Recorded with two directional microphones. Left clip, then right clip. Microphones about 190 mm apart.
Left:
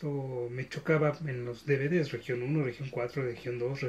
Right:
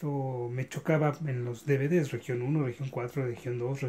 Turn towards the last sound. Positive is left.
turn(degrees=-60)  # may be behind; listen again after turning